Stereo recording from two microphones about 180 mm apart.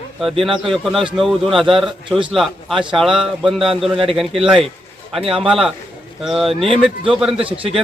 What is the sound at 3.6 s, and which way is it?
Speech, 30° right (ahead or behind).